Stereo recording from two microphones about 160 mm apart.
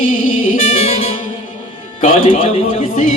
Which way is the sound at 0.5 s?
40° left (ahead or behind).